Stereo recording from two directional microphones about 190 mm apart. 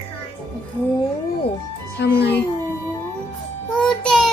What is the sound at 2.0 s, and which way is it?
Speech, 60° left (ahead or behind).